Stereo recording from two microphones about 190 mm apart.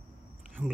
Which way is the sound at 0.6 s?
10° right (ahead or behind).